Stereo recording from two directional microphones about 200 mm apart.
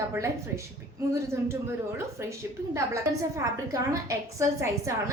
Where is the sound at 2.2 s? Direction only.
10° right (ahead or behind).